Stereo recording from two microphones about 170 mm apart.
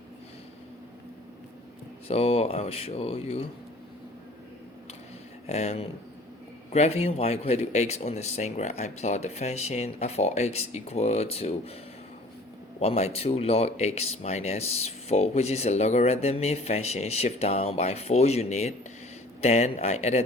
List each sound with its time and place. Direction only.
2.0 s speech: 35° left (ahead or behind)
5.5 s speech: 40° left (ahead or behind)
12.8 s speech: 35° left (ahead or behind)